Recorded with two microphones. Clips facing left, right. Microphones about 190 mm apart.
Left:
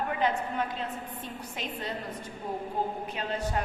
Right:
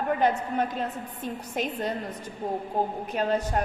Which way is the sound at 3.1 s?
45° right (ahead or behind).